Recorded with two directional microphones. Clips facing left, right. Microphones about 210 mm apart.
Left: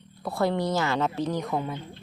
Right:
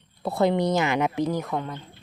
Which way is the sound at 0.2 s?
25° right (ahead or behind).